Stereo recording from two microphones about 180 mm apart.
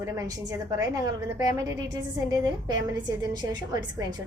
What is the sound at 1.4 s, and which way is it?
A woman's voice, 20° right (ahead or behind).